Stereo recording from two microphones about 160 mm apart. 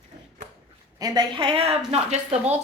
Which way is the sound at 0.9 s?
25° right (ahead or behind).